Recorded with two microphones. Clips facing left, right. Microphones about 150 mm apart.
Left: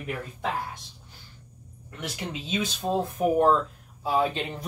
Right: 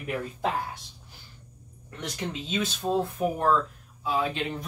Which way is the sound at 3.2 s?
20° left (ahead or behind).